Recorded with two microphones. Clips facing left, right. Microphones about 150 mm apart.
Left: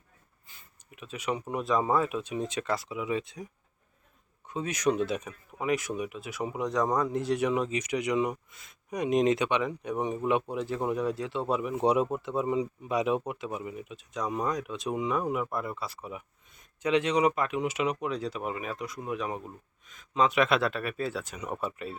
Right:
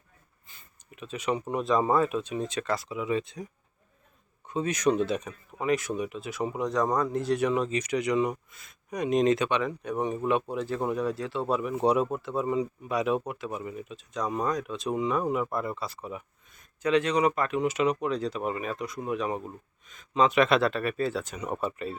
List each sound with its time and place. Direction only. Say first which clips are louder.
0.4 s speech: right 2 dB; 10° left (ahead or behind)
4.4 s speech: right 3 dB; 5° left (ahead or behind)